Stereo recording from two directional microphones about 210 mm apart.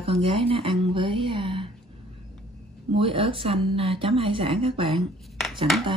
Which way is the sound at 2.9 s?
25° right (ahead or behind).